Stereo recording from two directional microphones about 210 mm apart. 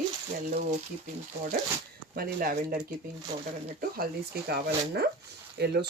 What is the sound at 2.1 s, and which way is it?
Speech, 45° right (ahead or behind).